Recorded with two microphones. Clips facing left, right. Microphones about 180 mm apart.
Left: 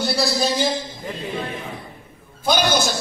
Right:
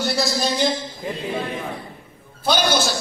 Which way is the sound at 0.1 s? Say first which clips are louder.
Left 1 dB; centre (ahead or behind).